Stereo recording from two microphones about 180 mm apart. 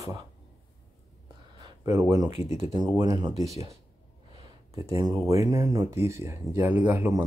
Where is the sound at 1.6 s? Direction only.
20° right (ahead or behind).